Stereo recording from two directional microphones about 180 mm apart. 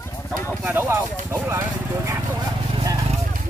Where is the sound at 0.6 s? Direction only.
10° right (ahead or behind).